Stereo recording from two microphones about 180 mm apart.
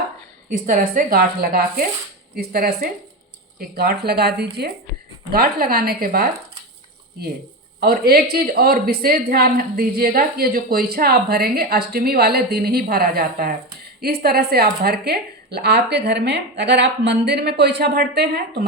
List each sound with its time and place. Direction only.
0.5 s a woman's voice: 50° right (ahead or behind)
7.8 s a woman's voice: 55° right (ahead or behind)